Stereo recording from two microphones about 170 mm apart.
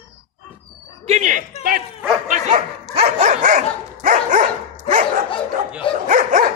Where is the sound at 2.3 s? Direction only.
45° right (ahead or behind).